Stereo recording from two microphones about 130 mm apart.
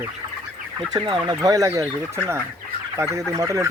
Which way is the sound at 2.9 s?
20° right (ahead or behind).